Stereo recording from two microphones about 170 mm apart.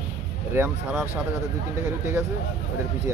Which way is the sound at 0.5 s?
15° right (ahead or behind).